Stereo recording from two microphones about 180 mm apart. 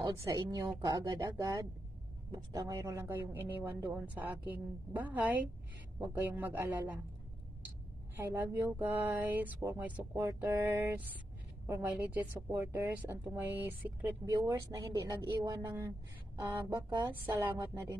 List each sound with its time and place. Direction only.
0.0 s a woman's voice: 25° right (ahead or behind)
8.2 s speech: 10° right (ahead or behind)